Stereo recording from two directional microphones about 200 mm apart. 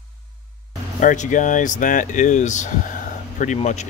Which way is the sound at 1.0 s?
40° left (ahead or behind).